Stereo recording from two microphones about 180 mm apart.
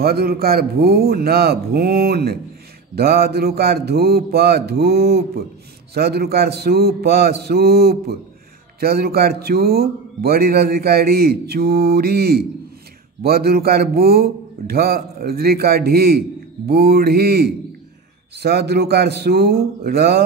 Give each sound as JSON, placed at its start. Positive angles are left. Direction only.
{"t": 0.0, "sound": "a man's voice", "side_deg": -60}